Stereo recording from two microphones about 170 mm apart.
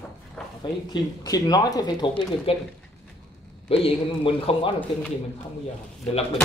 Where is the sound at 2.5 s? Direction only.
35° left (ahead or behind).